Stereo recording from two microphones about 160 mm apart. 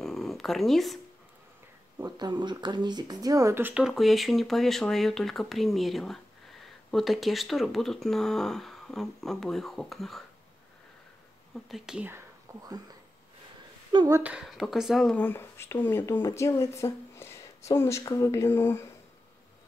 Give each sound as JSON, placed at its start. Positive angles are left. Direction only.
{"t": 0.0, "sound": "a sound", "side_deg": 0}
{"t": 2.0, "sound": "speech", "side_deg": -25}
{"t": 11.7, "sound": "speech", "side_deg": -5}
{"t": 12.5, "sound": "a sound", "side_deg": -20}
{"t": 13.9, "sound": "speech", "side_deg": -20}
{"t": 14.2, "sound": "speech", "side_deg": -5}
{"t": 15.1, "sound": "speech", "side_deg": 15}